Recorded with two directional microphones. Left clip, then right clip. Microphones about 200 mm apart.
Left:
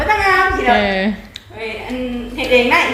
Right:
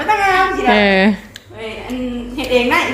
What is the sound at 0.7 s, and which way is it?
Speech, 35° right (ahead or behind).